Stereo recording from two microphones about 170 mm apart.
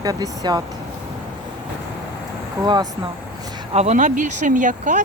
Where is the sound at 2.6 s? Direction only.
25° right (ahead or behind).